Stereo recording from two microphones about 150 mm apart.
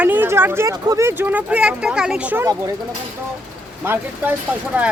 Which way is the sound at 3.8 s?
15° right (ahead or behind).